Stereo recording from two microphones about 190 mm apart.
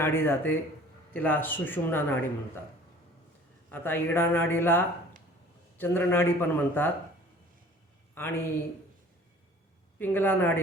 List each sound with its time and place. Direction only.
0.0 s speech: 10° left (ahead or behind)
3.7 s speech: 10° left (ahead or behind)
8.1 s speech: 10° left (ahead or behind)
10.0 s speech: 10° left (ahead or behind)